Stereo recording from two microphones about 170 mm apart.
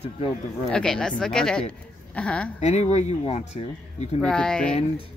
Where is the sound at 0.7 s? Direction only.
5° left (ahead or behind).